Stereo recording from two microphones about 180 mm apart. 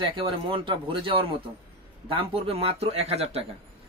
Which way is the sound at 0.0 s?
30° right (ahead or behind).